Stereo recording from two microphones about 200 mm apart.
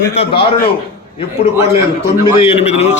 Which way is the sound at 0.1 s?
30° left (ahead or behind).